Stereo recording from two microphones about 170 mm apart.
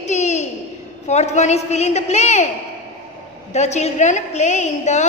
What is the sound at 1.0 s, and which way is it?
A woman's voice, 40° left (ahead or behind).